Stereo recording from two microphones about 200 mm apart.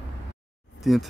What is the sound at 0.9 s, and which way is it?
Speech, centre (ahead or behind).